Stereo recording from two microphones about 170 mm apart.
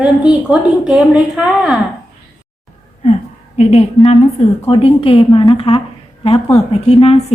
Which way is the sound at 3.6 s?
40° left (ahead or behind).